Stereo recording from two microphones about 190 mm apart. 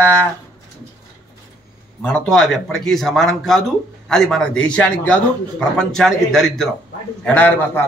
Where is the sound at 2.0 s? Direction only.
5° left (ahead or behind).